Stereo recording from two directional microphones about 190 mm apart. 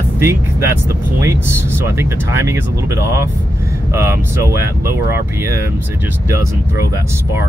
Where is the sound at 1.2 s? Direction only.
15° right (ahead or behind).